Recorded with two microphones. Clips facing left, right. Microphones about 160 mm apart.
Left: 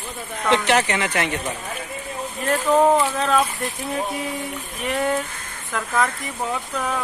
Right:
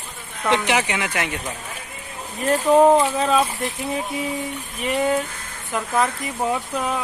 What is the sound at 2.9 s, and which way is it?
Speech, 20° right (ahead or behind).